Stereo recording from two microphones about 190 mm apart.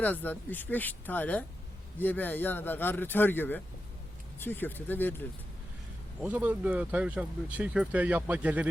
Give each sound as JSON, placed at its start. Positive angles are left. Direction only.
{"t": 0.0, "sound": "speech", "side_deg": 10}
{"t": 6.2, "sound": "speech", "side_deg": -10}